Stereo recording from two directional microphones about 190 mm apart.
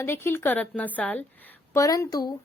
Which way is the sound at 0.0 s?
10° left (ahead or behind).